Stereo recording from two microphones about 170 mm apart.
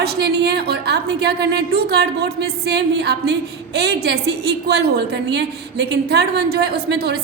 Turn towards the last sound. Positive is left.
turn(degrees=-70)  # may be behind; listen again after turning